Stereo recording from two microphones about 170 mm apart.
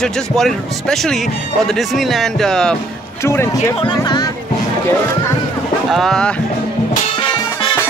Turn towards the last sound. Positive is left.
turn(degrees=5)  # may be behind; listen again after turning